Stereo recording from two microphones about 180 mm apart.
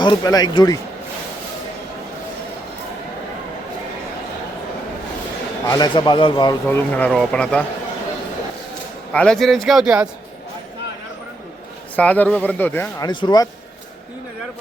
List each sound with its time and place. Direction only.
0.0 s speech: 25° left (ahead or behind)
5.6 s speech: 20° left (ahead or behind)
6.7 s speech: 10° left (ahead or behind)
9.1 s speech: 5° left (ahead or behind)
11.9 s speech: 10° left (ahead or behind)
13.0 s speech: 25° left (ahead or behind)